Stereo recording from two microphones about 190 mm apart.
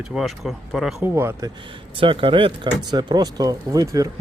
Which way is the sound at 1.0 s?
15° right (ahead or behind).